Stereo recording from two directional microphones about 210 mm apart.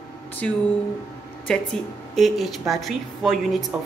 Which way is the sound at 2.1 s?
Centre (ahead or behind).